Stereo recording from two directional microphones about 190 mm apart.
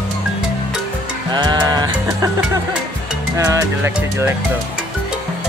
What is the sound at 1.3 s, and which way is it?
Music, 20° right (ahead or behind).